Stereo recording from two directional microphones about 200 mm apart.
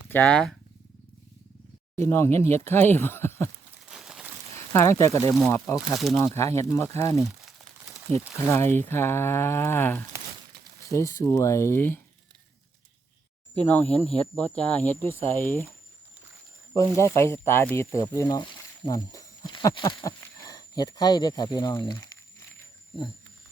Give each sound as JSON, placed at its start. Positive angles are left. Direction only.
{"t": 0.1, "sound": "speech", "side_deg": 5}
{"t": 2.0, "sound": "speech", "side_deg": 15}
{"t": 3.8, "sound": "a sound", "side_deg": -5}
{"t": 4.5, "sound": "speech", "side_deg": 15}
{"t": 7.2, "sound": "speech", "side_deg": 0}
{"t": 8.4, "sound": "speech", "side_deg": 10}
{"t": 13.7, "sound": "speech", "side_deg": 10}
{"t": 16.7, "sound": "speech", "side_deg": 15}